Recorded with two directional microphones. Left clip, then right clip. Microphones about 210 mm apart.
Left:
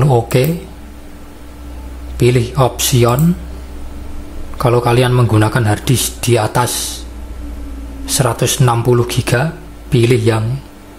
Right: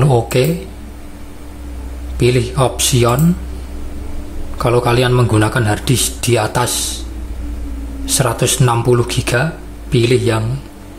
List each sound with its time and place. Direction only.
0.0 s speech: 10° left (ahead or behind)
2.1 s speech: 10° left (ahead or behind)
4.6 s speech: 10° left (ahead or behind)
8.0 s speech: 10° left (ahead or behind)